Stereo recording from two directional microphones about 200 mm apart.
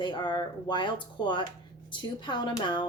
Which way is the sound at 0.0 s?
25° left (ahead or behind).